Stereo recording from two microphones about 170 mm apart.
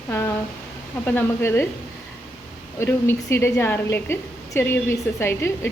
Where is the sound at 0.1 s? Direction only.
15° left (ahead or behind).